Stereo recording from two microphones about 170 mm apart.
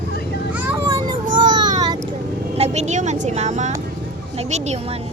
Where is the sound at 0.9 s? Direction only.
25° right (ahead or behind).